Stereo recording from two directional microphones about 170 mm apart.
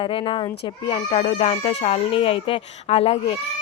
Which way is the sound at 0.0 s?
30° left (ahead or behind).